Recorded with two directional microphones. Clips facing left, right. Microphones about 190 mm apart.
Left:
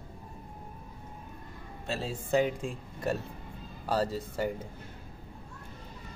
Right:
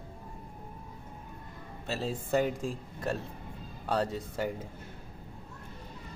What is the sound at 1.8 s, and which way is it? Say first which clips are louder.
A man's voice: right 1 dB; 5° right (ahead or behind).